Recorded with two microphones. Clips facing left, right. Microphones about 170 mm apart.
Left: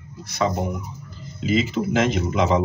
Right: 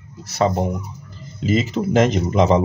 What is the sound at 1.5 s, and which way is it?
Speech, 40° right (ahead or behind).